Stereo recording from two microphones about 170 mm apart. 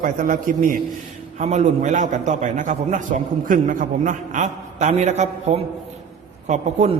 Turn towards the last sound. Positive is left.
turn(degrees=-45)  # may be behind; listen again after turning